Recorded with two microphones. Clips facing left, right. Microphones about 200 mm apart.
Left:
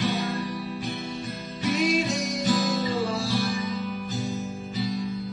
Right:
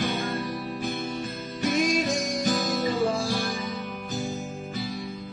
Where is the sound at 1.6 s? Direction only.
45° right (ahead or behind).